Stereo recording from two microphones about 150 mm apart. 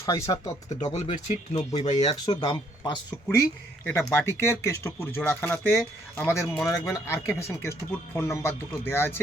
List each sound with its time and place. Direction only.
0.0 s speech: 20° left (ahead or behind)
0.7 s speech: 50° left (ahead or behind)
2.2 s speech: 30° left (ahead or behind)
3.8 s speech: 15° left (ahead or behind)